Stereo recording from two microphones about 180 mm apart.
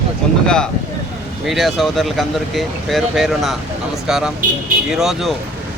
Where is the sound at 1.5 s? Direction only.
Centre (ahead or behind).